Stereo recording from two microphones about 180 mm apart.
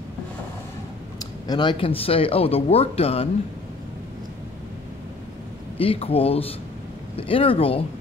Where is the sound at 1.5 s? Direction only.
25° left (ahead or behind).